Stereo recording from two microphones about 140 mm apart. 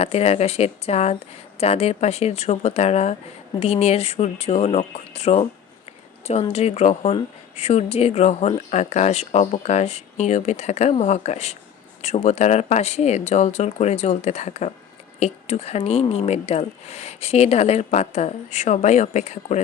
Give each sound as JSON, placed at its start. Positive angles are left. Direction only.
{"t": 0.0, "sound": "speech", "side_deg": 50}
{"t": 6.5, "sound": "speech", "side_deg": 50}